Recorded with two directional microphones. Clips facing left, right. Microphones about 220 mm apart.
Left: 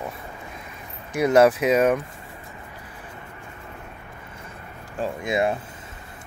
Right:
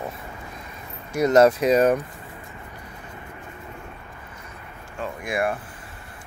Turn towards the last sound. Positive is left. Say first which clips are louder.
# left 2 dB
turn(degrees=20)  # may be behind; listen again after turning